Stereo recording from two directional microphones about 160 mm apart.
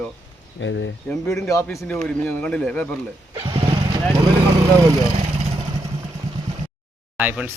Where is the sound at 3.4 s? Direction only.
30° right (ahead or behind).